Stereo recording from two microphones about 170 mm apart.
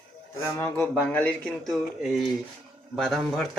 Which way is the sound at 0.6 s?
10° left (ahead or behind).